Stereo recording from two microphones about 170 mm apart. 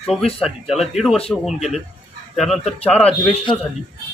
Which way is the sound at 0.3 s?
Centre (ahead or behind).